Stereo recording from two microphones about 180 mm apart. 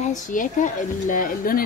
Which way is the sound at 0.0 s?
45° left (ahead or behind).